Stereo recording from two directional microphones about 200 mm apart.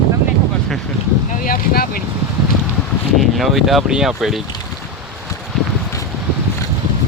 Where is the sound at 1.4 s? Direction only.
45° left (ahead or behind).